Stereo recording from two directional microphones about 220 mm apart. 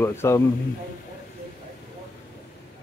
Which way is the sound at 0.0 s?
10° left (ahead or behind).